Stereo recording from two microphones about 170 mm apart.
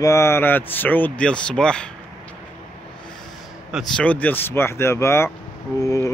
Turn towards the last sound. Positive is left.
turn(degrees=20)  # may be behind; listen again after turning